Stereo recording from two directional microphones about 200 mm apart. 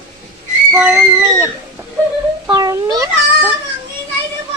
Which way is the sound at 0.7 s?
10° right (ahead or behind).